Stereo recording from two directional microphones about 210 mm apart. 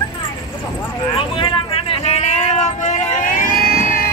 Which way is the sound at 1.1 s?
25° left (ahead or behind).